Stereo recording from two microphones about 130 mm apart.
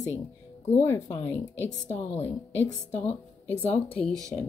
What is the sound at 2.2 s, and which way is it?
A woman's voice, 15° left (ahead or behind).